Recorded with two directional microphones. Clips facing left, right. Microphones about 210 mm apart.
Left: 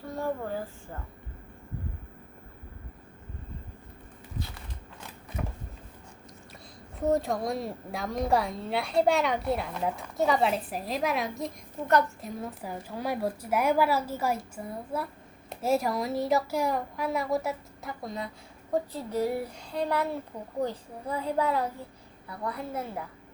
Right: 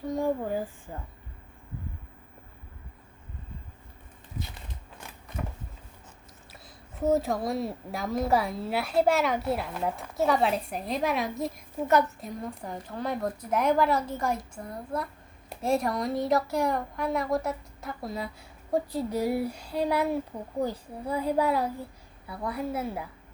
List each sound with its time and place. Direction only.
0.1 s a child's voice: 15° right (ahead or behind)
5.4 s a sound: centre (ahead or behind)
7.0 s a woman's voice: centre (ahead or behind)